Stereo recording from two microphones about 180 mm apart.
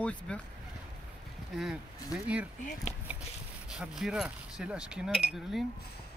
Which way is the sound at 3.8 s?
5° right (ahead or behind).